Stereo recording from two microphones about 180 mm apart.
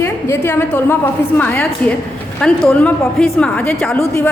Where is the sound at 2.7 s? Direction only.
5° left (ahead or behind).